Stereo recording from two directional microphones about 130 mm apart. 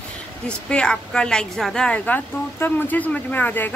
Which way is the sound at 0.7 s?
5° left (ahead or behind).